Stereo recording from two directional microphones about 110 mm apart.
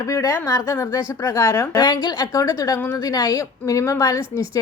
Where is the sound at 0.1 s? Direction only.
30° left (ahead or behind).